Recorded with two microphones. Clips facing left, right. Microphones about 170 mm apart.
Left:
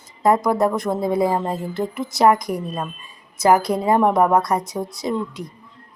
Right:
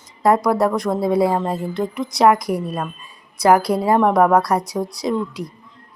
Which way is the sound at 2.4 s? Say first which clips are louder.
Right 3 dB; 10° right (ahead or behind).